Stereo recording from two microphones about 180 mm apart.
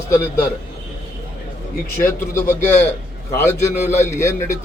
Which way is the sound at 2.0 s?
15° left (ahead or behind).